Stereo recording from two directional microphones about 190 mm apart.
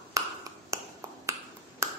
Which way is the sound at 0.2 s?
15° right (ahead or behind).